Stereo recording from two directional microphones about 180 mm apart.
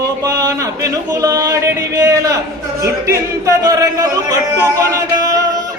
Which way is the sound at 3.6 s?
20° right (ahead or behind).